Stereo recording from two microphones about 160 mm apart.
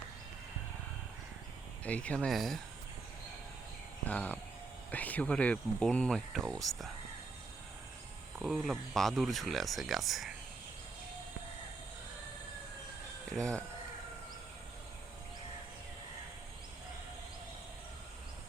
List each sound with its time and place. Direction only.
1.8 s speech: 10° left (ahead or behind)
4.0 s speech: 10° left (ahead or behind)
8.4 s speech: centre (ahead or behind)
13.3 s speech: 5° left (ahead or behind)